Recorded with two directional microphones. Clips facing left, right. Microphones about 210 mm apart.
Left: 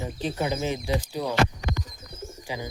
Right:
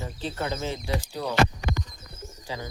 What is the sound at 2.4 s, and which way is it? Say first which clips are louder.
Bird: left 1 dB; 15° left (ahead or behind).